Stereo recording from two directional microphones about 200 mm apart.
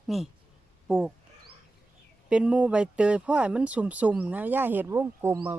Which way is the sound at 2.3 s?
5° right (ahead or behind).